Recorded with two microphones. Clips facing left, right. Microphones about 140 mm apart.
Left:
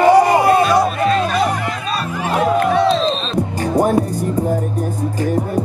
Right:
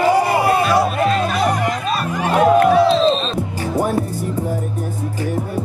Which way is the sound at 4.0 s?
15° left (ahead or behind).